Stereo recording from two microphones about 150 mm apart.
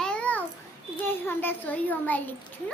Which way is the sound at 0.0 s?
5° left (ahead or behind).